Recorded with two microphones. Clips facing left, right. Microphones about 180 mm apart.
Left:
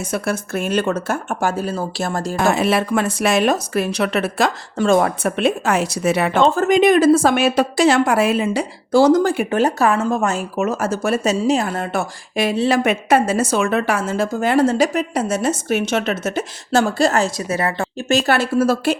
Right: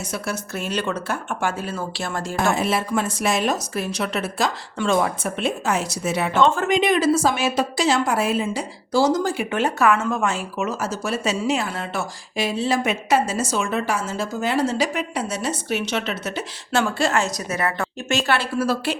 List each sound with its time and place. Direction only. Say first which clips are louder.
0.1 s a woman's voice: left 7 dB; 50° left (ahead or behind)
2.5 s a woman's voice: left 5 dB; 70° left (ahead or behind)
4.8 s a woman's voice: left 5 dB; 50° left (ahead or behind); by 6.4 s 65° left (ahead or behind)
6.4 s a woman's voice: left 5 dB; 40° left (ahead or behind); by 9.5 s 55° left (ahead or behind)
9.5 s a woman's voice: left 3 dB; 40° left (ahead or behind)